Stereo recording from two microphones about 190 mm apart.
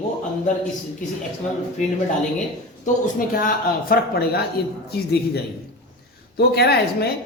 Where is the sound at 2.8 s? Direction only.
45° left (ahead or behind).